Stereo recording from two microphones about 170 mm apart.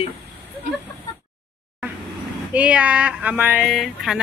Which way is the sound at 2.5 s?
10° right (ahead or behind).